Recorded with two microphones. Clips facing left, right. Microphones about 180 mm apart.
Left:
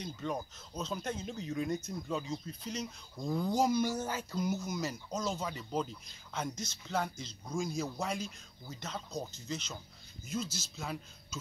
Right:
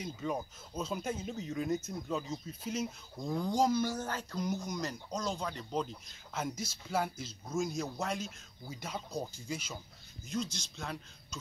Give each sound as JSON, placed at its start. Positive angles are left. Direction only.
{"t": 0.0, "sound": "speech", "side_deg": -5}
{"t": 3.3, "sound": "speech", "side_deg": 5}
{"t": 10.2, "sound": "speech", "side_deg": 5}